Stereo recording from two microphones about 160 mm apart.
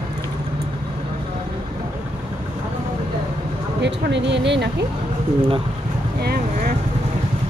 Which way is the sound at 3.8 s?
90° right.